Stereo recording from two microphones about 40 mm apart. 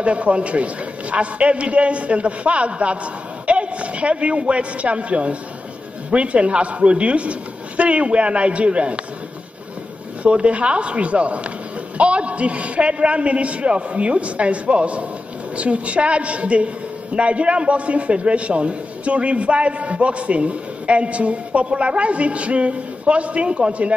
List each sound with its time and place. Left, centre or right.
0.0 s a woman's voice: right
10.2 s a woman's voice: right